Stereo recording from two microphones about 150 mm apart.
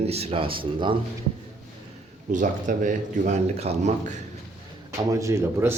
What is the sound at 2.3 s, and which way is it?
A man's voice, 55° right (ahead or behind).